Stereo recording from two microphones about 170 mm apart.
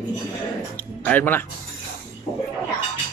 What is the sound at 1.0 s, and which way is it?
Speech, 10° left (ahead or behind).